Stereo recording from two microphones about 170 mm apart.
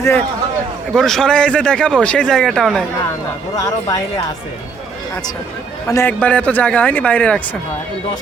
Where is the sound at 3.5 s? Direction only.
20° left (ahead or behind).